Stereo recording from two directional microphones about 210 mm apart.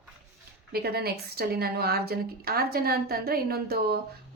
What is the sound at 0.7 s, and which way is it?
A woman's voice, 50° right (ahead or behind).